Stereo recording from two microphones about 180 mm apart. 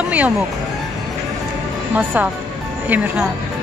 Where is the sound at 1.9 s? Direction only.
10° right (ahead or behind).